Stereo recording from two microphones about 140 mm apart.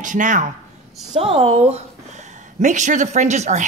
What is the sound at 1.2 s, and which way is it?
Speech, 45° right (ahead or behind).